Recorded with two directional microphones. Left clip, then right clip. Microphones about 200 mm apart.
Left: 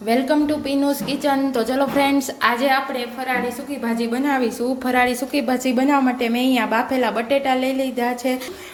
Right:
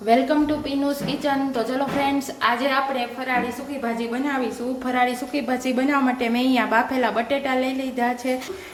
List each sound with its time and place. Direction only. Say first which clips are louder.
0.1 s a woman's voice: even; 20° left (ahead or behind)
3.8 s a woman's voice: left 4 dB; 30° left (ahead or behind)